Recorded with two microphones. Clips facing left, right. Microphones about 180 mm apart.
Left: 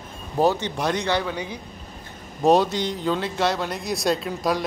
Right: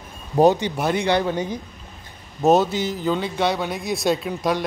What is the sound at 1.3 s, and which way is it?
Speech, 45° right (ahead or behind).